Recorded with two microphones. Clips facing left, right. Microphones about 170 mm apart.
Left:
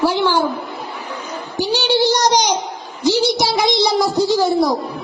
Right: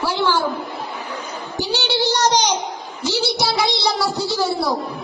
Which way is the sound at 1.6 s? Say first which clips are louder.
Left 5 dB; 15° left (ahead or behind).